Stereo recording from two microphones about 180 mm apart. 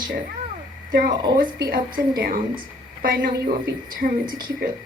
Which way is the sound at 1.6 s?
55° right (ahead or behind).